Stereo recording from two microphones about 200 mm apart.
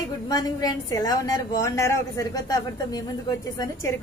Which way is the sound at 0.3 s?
20° left (ahead or behind).